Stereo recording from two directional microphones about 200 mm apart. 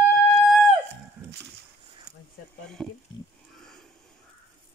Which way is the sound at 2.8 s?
Centre (ahead or behind).